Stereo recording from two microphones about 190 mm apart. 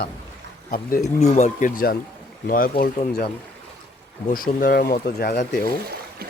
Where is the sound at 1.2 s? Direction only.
35° left (ahead or behind).